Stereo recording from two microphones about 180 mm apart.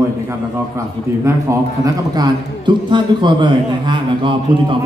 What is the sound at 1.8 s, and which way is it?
A man's voice, 25° right (ahead or behind).